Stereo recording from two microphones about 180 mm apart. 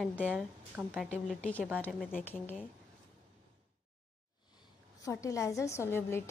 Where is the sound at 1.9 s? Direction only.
5° right (ahead or behind).